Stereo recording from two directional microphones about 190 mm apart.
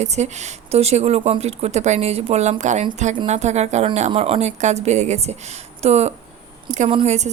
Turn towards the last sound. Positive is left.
turn(degrees=-35)  # may be behind; listen again after turning